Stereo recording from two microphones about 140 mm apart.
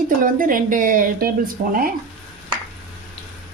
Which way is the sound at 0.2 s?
80° right.